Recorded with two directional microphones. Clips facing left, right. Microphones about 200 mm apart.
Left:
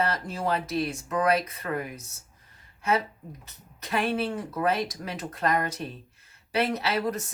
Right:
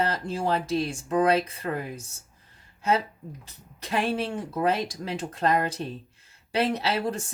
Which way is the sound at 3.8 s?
30° right (ahead or behind).